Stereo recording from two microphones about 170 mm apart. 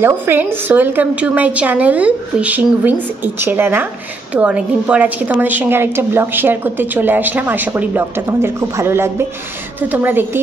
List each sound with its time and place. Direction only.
0.0 s a woman's voice: 10° right (ahead or behind)